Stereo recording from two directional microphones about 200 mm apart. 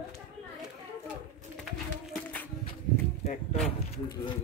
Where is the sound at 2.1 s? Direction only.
5° left (ahead or behind).